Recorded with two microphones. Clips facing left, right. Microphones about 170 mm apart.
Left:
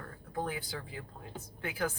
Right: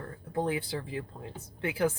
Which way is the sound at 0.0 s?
30° right (ahead or behind).